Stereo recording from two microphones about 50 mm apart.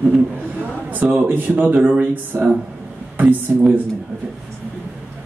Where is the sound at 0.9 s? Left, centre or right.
Right.